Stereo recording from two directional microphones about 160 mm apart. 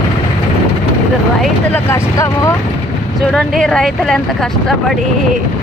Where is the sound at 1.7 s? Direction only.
15° left (ahead or behind).